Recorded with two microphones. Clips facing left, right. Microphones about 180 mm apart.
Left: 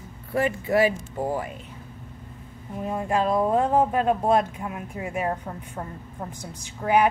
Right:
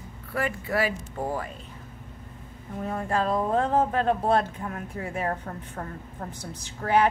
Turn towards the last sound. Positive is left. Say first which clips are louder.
# left 2 dB
turn(degrees=10)  # may be behind; listen again after turning